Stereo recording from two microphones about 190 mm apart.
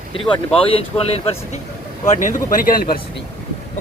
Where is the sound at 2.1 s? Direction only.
45° left (ahead or behind).